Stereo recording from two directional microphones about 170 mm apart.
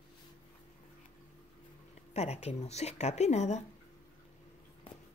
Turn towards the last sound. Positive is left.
turn(degrees=40)  # may be behind; listen again after turning